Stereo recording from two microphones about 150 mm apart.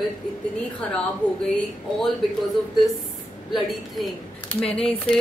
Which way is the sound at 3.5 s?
Centre (ahead or behind).